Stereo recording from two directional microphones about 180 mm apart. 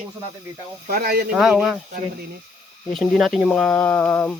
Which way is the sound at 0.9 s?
55° right (ahead or behind).